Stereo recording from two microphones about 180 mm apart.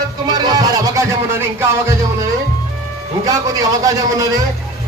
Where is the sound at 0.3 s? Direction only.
20° right (ahead or behind).